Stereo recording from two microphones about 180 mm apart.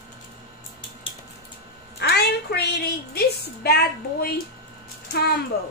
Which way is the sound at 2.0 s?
65° left (ahead or behind).